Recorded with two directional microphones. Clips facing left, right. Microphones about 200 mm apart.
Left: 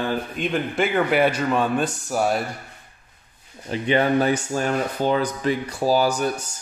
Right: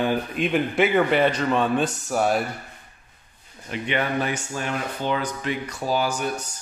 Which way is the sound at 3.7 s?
35° left (ahead or behind).